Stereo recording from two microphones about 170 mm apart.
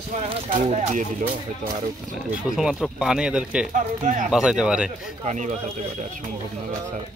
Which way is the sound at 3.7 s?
45° right (ahead or behind).